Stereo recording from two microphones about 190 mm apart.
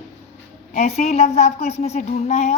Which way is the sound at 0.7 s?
35° left (ahead or behind).